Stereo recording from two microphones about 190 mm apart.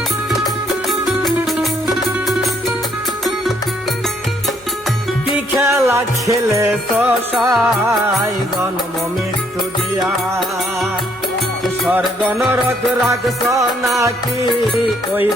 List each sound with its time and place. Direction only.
0.3 s music: centre (ahead or behind)
5.5 s music: 15° right (ahead or behind)
11.6 s music: 10° right (ahead or behind)